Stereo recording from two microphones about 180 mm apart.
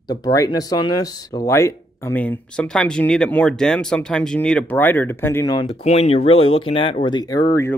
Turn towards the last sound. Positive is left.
turn(degrees=20)  # may be behind; listen again after turning